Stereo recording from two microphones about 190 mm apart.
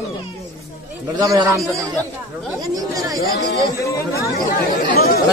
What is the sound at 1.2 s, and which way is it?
Speech, 15° right (ahead or behind).